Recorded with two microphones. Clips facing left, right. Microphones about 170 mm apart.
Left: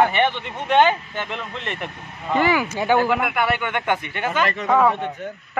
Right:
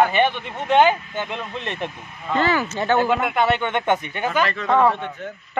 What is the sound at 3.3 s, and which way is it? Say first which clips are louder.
Speech: right 2 dB; 25° right (ahead or behind).